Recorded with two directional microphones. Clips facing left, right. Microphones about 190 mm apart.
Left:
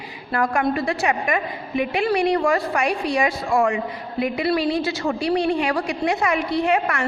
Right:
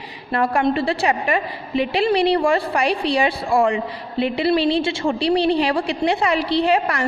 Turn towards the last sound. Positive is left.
turn(degrees=-35)  # may be behind; listen again after turning